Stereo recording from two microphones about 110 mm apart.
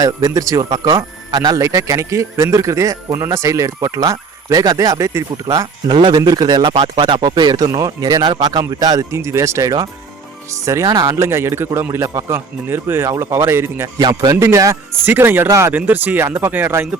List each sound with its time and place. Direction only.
0.0 s a man's voice: 30° right (ahead or behind)
5.9 s a man's voice: 45° right (ahead or behind); by 13.9 s 25° right (ahead or behind)
14.0 s a man's voice: 35° right (ahead or behind); by 17.0 s 20° right (ahead or behind)